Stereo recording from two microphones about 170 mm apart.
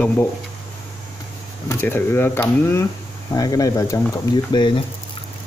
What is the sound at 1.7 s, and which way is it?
Speech, 15° left (ahead or behind).